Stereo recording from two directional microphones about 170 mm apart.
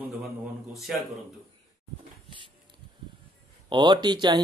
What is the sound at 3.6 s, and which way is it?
Speech, 25° right (ahead or behind).